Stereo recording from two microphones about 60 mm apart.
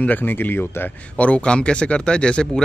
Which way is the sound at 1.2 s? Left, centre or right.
Left.